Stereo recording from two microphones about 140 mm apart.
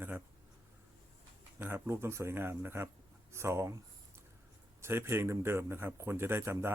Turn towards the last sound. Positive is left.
turn(degrees=-15)  # may be behind; listen again after turning